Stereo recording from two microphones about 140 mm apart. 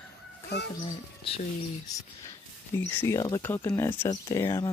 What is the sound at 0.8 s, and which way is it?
Speech, 45° left (ahead or behind).